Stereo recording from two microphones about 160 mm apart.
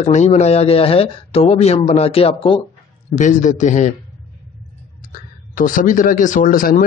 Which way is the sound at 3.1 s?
50° left (ahead or behind).